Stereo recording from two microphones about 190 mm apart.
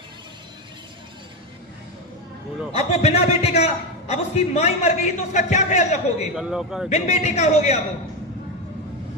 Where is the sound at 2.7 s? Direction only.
35° left (ahead or behind).